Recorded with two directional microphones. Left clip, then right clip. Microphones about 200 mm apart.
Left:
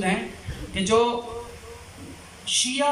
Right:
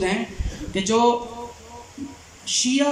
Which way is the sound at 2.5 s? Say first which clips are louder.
Right 2 dB; 25° right (ahead or behind).